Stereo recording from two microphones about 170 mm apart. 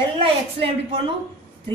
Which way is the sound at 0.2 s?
30° right (ahead or behind).